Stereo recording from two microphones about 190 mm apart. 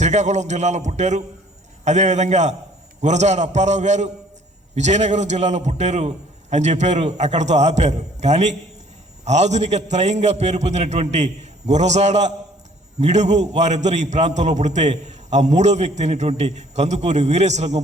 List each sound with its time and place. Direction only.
0.0 s a man's voice: 35° right (ahead or behind)